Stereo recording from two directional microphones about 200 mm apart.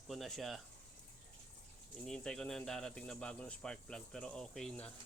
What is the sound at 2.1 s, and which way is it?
Speech, 5° left (ahead or behind).